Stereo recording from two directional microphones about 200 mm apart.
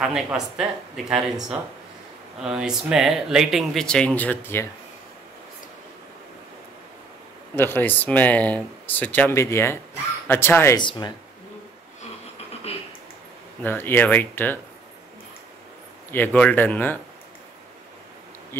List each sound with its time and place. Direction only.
0.0 s speech: 5° right (ahead or behind)
2.4 s speech: 5° right (ahead or behind)
7.5 s speech: 10° left (ahead or behind)
10.8 s speech: 25° left (ahead or behind)
12.7 s a sound: 30° left (ahead or behind)
13.6 s speech: 10° left (ahead or behind)
16.3 s speech: 5° left (ahead or behind)